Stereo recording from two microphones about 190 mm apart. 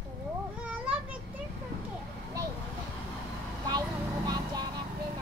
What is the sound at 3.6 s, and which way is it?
Vehicle, 20° right (ahead or behind).